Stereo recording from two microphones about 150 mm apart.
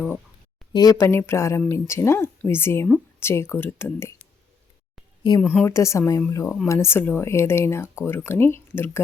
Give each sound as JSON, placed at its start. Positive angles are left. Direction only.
{"t": 0.7, "sound": "speech", "side_deg": 25}
{"t": 5.4, "sound": "a woman's voice", "side_deg": 5}
{"t": 5.6, "sound": "speech", "side_deg": 20}